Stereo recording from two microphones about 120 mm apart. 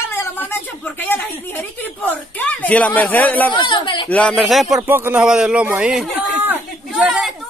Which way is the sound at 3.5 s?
40° left (ahead or behind).